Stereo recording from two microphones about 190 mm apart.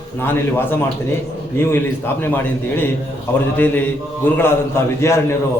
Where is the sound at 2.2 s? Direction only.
10° left (ahead or behind).